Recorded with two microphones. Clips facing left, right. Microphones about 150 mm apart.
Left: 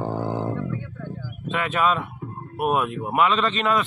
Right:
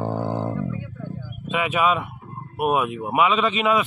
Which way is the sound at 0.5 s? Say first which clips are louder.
Right 1 dB; 10° right (ahead or behind).